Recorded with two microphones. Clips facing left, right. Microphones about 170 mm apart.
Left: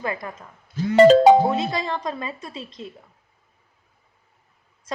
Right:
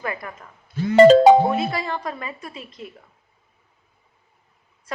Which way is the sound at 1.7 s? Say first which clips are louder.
Left 1 dB; 20° left (ahead or behind).